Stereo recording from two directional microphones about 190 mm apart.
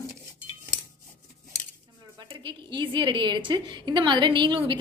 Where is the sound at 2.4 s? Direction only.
25° right (ahead or behind).